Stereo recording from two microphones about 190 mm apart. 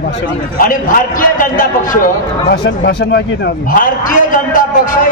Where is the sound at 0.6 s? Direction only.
45° left (ahead or behind).